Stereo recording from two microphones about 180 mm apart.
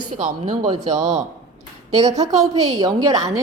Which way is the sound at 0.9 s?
40° right (ahead or behind).